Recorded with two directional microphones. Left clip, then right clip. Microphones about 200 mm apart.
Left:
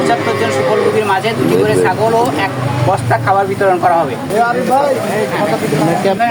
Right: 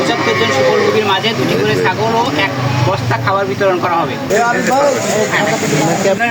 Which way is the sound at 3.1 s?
20° left (ahead or behind).